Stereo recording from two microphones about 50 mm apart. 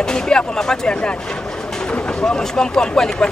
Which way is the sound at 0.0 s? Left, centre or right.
Centre.